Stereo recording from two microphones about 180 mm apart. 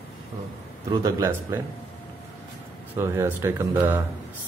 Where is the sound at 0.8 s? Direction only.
15° right (ahead or behind).